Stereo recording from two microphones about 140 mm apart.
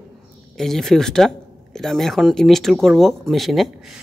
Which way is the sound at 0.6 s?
5° left (ahead or behind).